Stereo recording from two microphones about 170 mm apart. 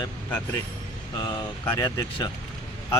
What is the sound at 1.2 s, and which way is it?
Speech, 20° left (ahead or behind).